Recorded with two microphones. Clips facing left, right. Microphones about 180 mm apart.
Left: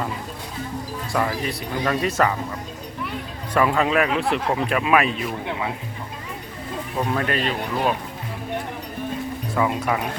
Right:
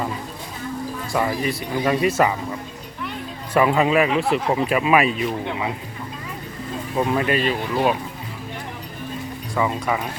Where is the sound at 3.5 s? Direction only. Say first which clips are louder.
Right 2 dB; 5° right (ahead or behind).